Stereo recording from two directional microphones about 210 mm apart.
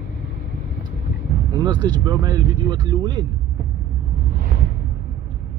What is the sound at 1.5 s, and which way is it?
Speech, 20° right (ahead or behind).